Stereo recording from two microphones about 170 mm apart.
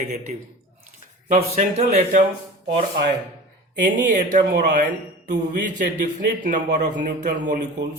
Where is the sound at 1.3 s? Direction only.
40° right (ahead or behind).